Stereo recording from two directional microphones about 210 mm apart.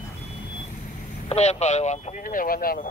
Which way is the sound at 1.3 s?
30° left (ahead or behind).